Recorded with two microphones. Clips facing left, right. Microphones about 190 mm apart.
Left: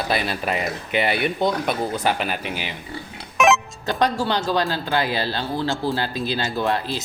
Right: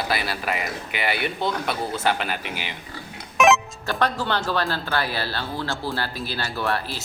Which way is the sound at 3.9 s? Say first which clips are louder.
Left 3 dB; 15° left (ahead or behind).